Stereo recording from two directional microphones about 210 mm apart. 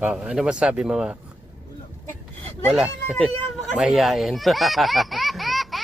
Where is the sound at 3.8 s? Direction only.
Centre (ahead or behind).